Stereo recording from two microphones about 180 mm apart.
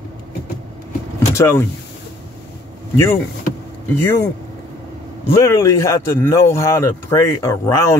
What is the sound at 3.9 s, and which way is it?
Speech, 15° left (ahead or behind).